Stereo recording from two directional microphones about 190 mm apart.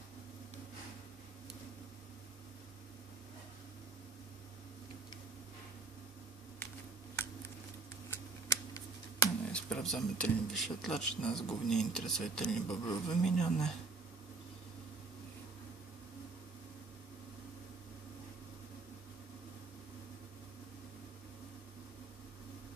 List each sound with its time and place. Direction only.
8.5 s a sound: 15° left (ahead or behind)
9.5 s speech: 5° left (ahead or behind)
12.6 s speech: 20° left (ahead or behind)
13.1 s speech: 5° left (ahead or behind)